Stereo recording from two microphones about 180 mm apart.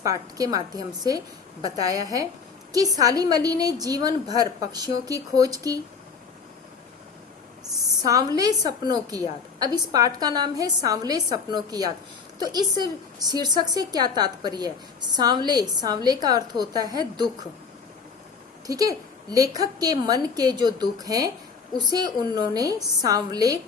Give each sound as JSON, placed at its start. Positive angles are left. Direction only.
{"t": 0.0, "sound": "a woman's voice", "side_deg": -20}
{"t": 8.0, "sound": "a woman's voice", "side_deg": -20}
{"t": 18.7, "sound": "a woman's voice", "side_deg": -20}